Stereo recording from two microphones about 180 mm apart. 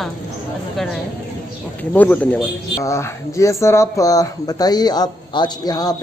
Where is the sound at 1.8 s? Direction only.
10° left (ahead or behind).